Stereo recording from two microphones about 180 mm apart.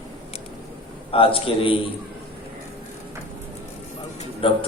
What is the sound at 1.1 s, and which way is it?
Speech, 30° left (ahead or behind).